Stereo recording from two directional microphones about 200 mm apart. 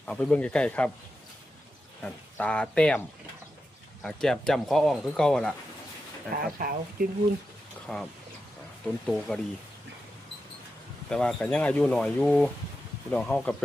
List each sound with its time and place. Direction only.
0.1 s speech: 5° left (ahead or behind)
2.0 s speech: 5° left (ahead or behind)
4.0 s speech: centre (ahead or behind)
6.3 s speech: 45° right (ahead or behind)
7.9 s speech: centre (ahead or behind)
9.0 s speech: centre (ahead or behind)
11.1 s speech: 5° left (ahead or behind)